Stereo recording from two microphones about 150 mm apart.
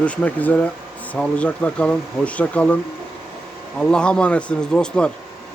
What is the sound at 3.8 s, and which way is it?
Speech, 5° left (ahead or behind).